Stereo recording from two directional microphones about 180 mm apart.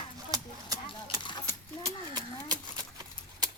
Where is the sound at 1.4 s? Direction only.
20° right (ahead or behind).